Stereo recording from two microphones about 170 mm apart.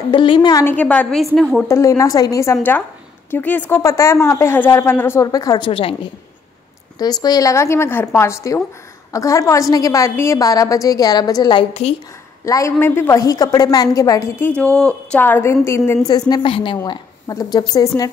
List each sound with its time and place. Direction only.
0.1 s a woman's voice: 30° left (ahead or behind)
0.7 s a woman's voice: 10° left (ahead or behind)
1.7 s a woman's voice: 20° left (ahead or behind)
7.0 s a woman's voice: 25° left (ahead or behind)
14.5 s a woman's voice: 5° left (ahead or behind); by 18.1 s 20° left (ahead or behind)